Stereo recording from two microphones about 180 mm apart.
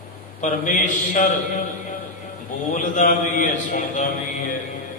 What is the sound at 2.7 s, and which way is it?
A man's voice, 45° left (ahead or behind).